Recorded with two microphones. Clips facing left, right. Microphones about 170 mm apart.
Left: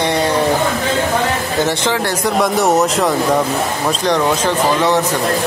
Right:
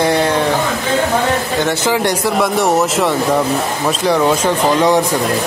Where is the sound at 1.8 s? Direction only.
15° right (ahead or behind).